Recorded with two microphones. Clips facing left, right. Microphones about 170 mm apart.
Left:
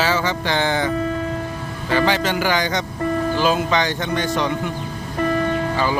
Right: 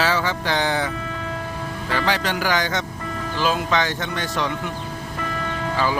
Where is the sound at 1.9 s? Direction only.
Centre (ahead or behind).